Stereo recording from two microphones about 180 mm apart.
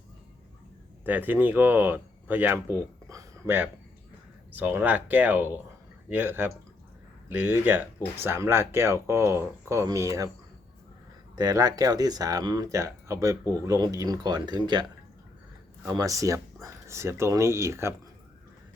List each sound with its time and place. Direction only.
1.0 s speech: 10° right (ahead or behind)
11.3 s speech: 20° right (ahead or behind)
15.9 s speech: 20° right (ahead or behind)